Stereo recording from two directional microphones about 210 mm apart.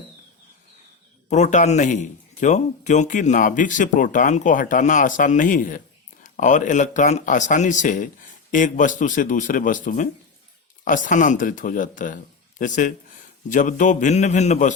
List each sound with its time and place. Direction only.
1.3 s a man's voice: 35° left (ahead or behind)